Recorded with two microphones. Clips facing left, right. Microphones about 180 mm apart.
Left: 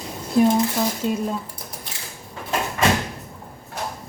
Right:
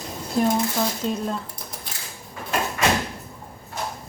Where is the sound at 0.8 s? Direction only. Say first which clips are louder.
Left 2 dB; 5° left (ahead or behind).